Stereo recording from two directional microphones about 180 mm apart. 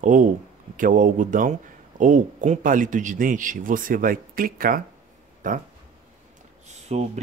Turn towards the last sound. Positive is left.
turn(degrees=-35)  # may be behind; listen again after turning